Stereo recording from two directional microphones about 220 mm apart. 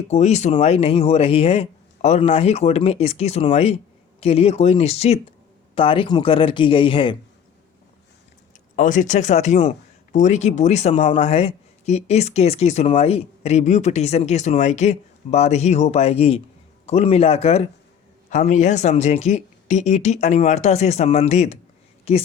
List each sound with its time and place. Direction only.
0.1 s speech: 30° left (ahead or behind)
8.7 s speech: 35° left (ahead or behind)